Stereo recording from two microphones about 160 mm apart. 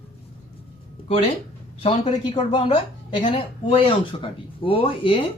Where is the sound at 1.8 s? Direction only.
35° left (ahead or behind).